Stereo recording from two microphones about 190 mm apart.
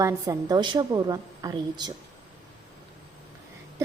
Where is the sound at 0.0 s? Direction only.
15° right (ahead or behind).